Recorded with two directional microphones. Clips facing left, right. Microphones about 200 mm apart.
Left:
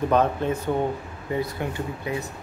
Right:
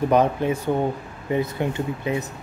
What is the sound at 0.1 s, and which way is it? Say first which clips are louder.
Speech: right 2 dB; 15° right (ahead or behind).